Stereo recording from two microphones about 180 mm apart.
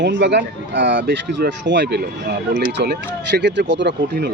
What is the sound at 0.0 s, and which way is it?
Speech, 75° right (ahead or behind).